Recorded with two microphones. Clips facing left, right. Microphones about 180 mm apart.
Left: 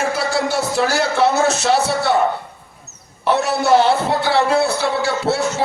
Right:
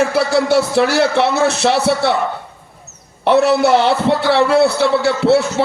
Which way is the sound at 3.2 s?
65° right (ahead or behind).